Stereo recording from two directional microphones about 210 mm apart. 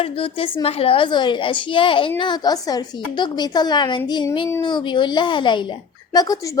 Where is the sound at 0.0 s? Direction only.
25° left (ahead or behind).